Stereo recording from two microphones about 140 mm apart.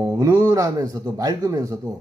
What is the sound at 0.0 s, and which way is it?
Speech, 20° right (ahead or behind).